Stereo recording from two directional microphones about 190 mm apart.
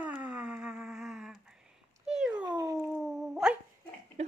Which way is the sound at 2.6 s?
20° right (ahead or behind).